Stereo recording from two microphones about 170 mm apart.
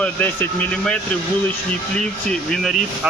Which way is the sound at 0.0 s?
10° left (ahead or behind).